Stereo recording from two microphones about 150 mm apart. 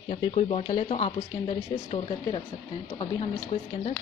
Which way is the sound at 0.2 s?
40° left (ahead or behind).